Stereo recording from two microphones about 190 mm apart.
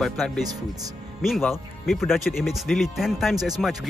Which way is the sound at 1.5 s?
Centre (ahead or behind).